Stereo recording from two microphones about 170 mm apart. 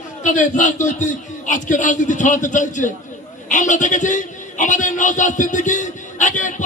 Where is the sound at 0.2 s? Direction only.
45° left (ahead or behind).